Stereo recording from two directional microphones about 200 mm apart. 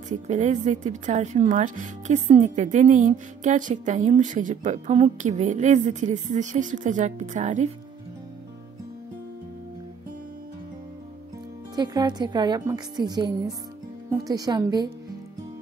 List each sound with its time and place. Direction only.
0.1 s a woman's voice: 35° right (ahead or behind)
11.7 s a woman's voice: 20° right (ahead or behind)